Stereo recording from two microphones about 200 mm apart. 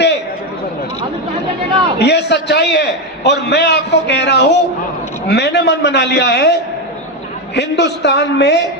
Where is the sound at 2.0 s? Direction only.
55° left (ahead or behind).